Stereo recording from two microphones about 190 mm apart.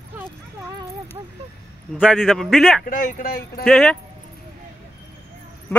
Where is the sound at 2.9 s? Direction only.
45° left (ahead or behind).